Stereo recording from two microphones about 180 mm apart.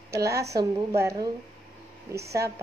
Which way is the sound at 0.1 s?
15° right (ahead or behind).